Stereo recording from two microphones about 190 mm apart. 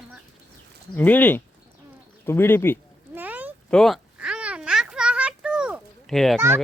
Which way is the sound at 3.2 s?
10° right (ahead or behind).